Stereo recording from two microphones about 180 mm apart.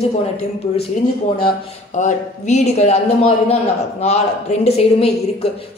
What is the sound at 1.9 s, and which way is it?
A woman's voice, 40° left (ahead or behind).